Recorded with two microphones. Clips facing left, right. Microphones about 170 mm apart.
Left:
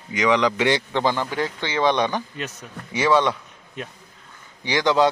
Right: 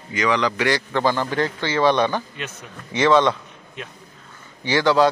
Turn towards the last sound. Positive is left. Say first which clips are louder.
# right 2 dB
turn(degrees=20)  # may be behind; listen again after turning